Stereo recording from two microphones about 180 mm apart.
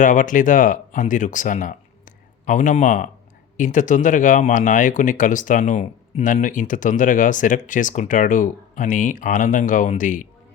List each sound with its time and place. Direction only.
0.0 s speech: 45° left (ahead or behind)